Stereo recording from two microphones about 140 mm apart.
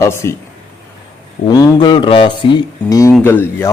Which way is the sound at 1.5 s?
30° left (ahead or behind).